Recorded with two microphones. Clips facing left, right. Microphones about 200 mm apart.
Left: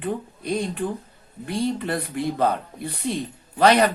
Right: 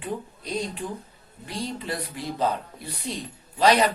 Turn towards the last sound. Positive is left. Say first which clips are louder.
# left 3 dB
turn(degrees=55)  # may be behind; listen again after turning